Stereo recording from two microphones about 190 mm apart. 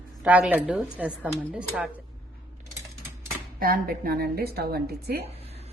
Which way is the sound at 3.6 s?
50° right (ahead or behind).